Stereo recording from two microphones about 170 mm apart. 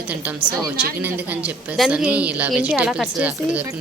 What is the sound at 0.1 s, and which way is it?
A woman's voice, 10° right (ahead or behind).